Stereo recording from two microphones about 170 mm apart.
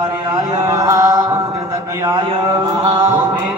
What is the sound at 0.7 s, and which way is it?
Chant, 20° right (ahead or behind).